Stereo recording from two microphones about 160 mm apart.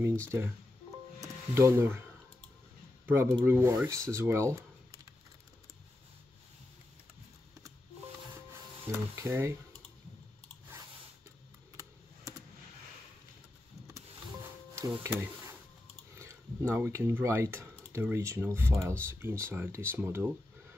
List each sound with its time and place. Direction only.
0.3 s speech: 15° right (ahead or behind)
1.5 s speech: 15° right (ahead or behind)
3.1 s speech: 10° right (ahead or behind)
8.9 s speech: 20° right (ahead or behind)
13.8 s music: 15° right (ahead or behind)
15.0 s speech: 15° right (ahead or behind)